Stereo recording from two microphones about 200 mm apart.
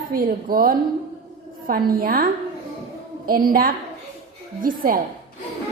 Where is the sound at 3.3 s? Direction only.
45° right (ahead or behind).